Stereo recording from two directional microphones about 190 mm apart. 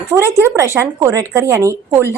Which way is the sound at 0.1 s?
15° right (ahead or behind).